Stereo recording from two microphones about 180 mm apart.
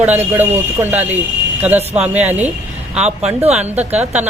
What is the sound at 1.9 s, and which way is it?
Speech, 35° right (ahead or behind).